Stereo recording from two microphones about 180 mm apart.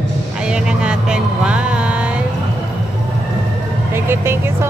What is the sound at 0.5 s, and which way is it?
Vehicle, 5° right (ahead or behind).